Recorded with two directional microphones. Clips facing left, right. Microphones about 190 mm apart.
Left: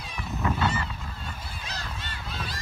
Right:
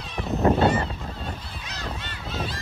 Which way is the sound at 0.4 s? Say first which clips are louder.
Right 8 dB; 40° right (ahead or behind).